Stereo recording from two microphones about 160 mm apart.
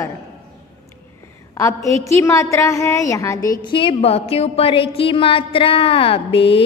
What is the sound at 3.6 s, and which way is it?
A woman's voice, 30° left (ahead or behind).